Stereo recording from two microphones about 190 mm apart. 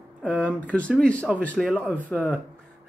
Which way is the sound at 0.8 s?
5° left (ahead or behind).